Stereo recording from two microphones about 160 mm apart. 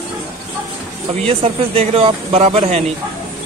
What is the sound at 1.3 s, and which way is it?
Speech, 40° right (ahead or behind).